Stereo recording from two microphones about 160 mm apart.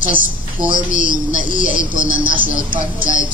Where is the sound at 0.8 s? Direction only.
50° left (ahead or behind).